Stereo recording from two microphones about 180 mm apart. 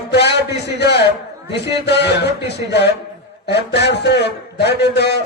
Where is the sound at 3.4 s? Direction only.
70° left (ahead or behind).